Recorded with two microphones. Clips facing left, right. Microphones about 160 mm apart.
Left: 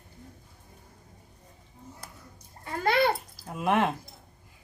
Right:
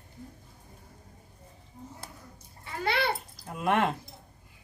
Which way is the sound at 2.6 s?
45° left (ahead or behind).